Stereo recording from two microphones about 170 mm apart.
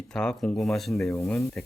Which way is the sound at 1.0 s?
15° left (ahead or behind).